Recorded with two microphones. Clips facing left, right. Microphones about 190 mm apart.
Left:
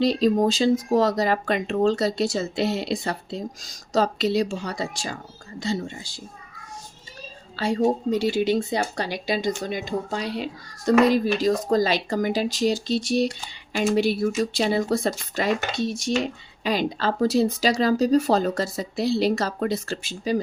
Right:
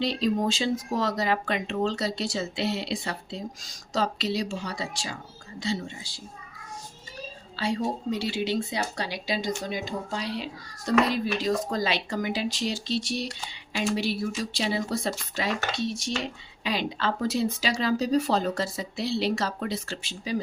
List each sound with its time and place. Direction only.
0.0 s speech: 40° left (ahead or behind)
7.5 s speech: 45° left (ahead or behind)